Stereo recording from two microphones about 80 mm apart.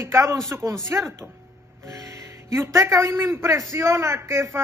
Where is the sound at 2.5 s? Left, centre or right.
Right.